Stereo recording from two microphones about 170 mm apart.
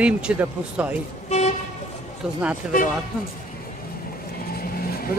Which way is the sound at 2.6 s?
5° right (ahead or behind).